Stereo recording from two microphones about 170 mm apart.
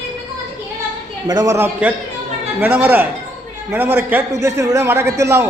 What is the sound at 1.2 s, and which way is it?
A man's voice, 20° right (ahead or behind).